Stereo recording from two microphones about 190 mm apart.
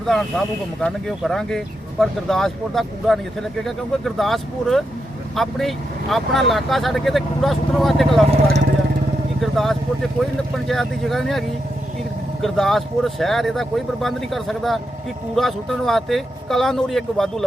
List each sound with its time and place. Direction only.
0.1 s speech: centre (ahead or behind)
9.4 s speech: centre (ahead or behind)